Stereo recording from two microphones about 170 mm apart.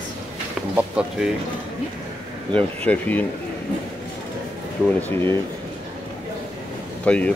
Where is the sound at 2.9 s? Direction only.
10° left (ahead or behind).